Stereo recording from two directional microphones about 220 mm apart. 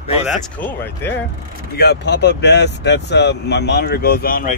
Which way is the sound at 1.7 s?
50° left (ahead or behind).